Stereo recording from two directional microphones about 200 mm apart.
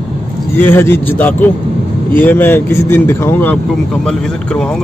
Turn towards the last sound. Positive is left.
turn(degrees=5)  # may be behind; listen again after turning